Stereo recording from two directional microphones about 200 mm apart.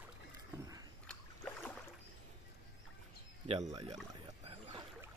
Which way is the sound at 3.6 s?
15° right (ahead or behind).